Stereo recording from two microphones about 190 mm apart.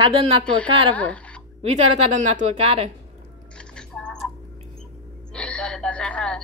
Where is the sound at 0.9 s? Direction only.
5° left (ahead or behind).